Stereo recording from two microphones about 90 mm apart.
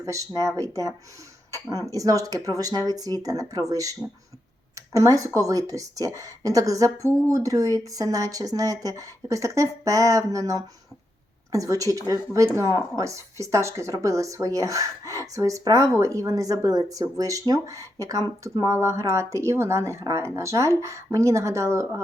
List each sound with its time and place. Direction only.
0.0 s speech: 35° right (ahead or behind)